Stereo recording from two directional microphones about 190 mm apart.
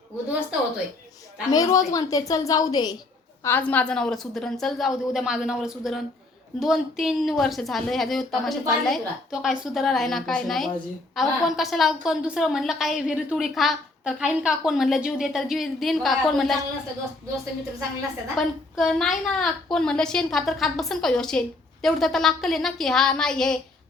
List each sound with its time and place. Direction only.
1.5 s a woman's voice: 20° left (ahead or behind); by 16.6 s centre (ahead or behind)
18.3 s a woman's voice: 5° left (ahead or behind)